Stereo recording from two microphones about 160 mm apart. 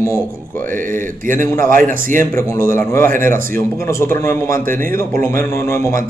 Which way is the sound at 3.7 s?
15° left (ahead or behind).